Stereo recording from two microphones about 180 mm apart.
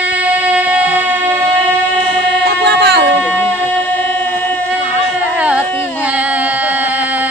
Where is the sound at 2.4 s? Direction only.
65° right (ahead or behind).